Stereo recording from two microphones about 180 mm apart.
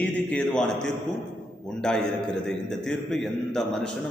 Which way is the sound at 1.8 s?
5° left (ahead or behind).